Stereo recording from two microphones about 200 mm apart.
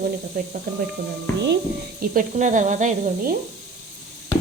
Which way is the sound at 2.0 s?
45° right (ahead or behind).